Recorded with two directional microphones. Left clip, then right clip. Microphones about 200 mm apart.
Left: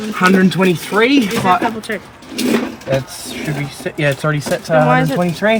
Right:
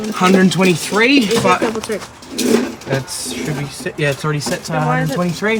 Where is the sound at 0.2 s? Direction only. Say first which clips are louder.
Even; centre (ahead or behind).